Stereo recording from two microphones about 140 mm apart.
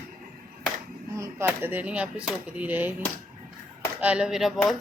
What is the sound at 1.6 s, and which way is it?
Speech, 10° right (ahead or behind).